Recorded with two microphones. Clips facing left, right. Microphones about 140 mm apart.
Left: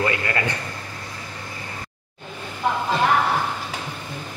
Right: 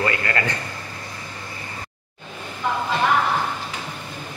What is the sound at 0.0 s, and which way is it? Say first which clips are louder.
Speech: even; 20° left (ahead or behind).